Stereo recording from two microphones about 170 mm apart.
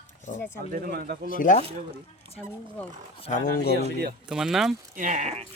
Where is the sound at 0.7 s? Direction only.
60° right (ahead or behind).